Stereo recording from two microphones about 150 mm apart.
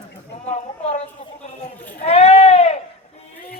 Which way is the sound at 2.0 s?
45° left (ahead or behind).